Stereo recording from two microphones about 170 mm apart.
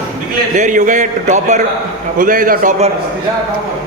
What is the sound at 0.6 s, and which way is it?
A man's voice, 50° right (ahead or behind).